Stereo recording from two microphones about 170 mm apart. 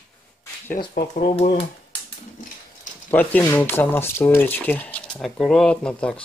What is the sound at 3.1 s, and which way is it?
Speech, 10° left (ahead or behind).